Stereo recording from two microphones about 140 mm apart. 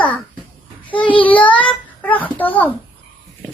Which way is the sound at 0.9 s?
35° left (ahead or behind).